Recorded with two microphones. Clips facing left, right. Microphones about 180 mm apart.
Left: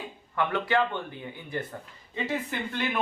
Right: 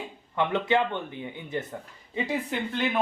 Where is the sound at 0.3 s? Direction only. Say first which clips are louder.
Right 2 dB; 20° right (ahead or behind).